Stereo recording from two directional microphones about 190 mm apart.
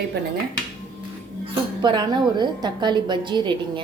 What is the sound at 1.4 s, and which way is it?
A woman's voice, 25° right (ahead or behind).